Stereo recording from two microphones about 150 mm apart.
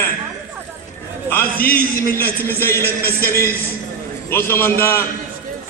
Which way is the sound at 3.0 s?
80° left.